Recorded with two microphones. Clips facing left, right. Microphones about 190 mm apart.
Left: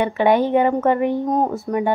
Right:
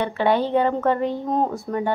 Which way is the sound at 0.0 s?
15° left (ahead or behind).